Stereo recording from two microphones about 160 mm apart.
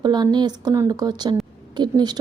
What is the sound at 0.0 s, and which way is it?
Speech, 25° right (ahead or behind).